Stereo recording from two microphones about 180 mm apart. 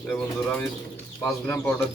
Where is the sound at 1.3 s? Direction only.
15° left (ahead or behind).